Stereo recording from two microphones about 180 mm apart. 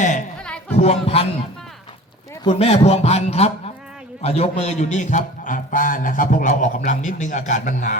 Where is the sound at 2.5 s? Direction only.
35° left (ahead or behind).